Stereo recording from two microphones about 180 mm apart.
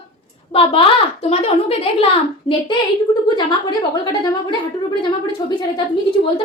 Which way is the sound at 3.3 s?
25° left (ahead or behind).